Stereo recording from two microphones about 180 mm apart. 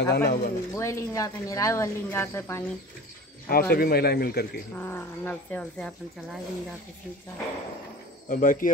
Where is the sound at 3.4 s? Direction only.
55° left (ahead or behind).